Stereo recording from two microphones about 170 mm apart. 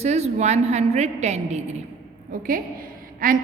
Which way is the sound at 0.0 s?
40° right (ahead or behind).